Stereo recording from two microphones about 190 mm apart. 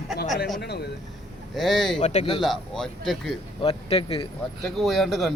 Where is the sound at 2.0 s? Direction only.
35° left (ahead or behind).